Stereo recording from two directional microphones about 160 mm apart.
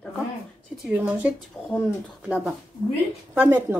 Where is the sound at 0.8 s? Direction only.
10° right (ahead or behind).